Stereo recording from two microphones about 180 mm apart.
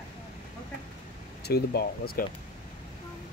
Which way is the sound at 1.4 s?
60° left (ahead or behind).